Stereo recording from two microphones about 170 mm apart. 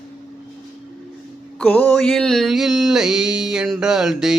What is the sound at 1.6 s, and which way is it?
Mantra, 10° left (ahead or behind).